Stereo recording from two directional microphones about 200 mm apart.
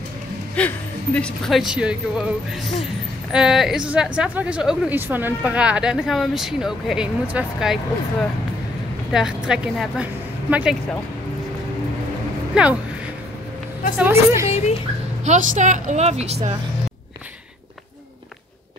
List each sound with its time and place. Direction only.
0.6 s a woman's voice: 5° left (ahead or behind)
3.3 s a woman's voice: 5° right (ahead or behind)
9.1 s a woman's voice: 5° right (ahead or behind)
12.6 s a woman's voice: 5° right (ahead or behind)
13.9 s a woman's voice: 10° right (ahead or behind)
15.2 s a woman's voice: 40° right (ahead or behind)